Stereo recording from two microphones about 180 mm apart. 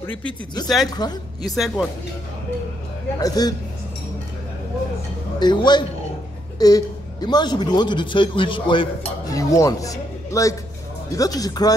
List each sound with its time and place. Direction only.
0.8 s a man's voice: 20° left (ahead or behind)
1.5 s speech: centre (ahead or behind)
3.2 s a man's voice: 20° left (ahead or behind)
5.4 s a man's voice: 25° left (ahead or behind)